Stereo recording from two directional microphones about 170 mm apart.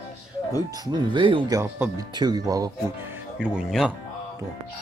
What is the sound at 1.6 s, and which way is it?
Speech, 20° right (ahead or behind).